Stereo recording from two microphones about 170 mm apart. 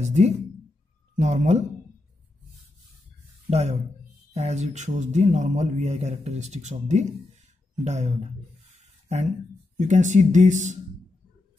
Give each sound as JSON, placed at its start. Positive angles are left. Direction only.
{"t": 0.0, "sound": "speech", "side_deg": -40}
{"t": 3.4, "sound": "speech", "side_deg": -40}
{"t": 9.8, "sound": "speech", "side_deg": -45}